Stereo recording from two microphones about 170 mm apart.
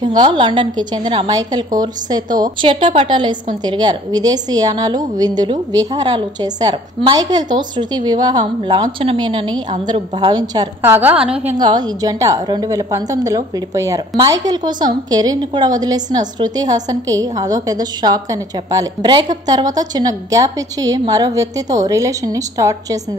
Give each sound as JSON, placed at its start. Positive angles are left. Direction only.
{"t": 0.0, "sound": "a woman's voice", "side_deg": -25}
{"t": 10.8, "sound": "a woman's voice", "side_deg": -10}
{"t": 11.5, "sound": "a woman's voice", "side_deg": -25}